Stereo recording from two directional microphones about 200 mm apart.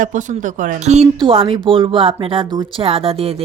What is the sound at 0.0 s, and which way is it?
A woman's voice, 40° right (ahead or behind).